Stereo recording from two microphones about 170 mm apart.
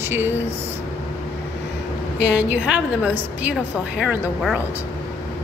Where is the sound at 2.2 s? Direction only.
90° left.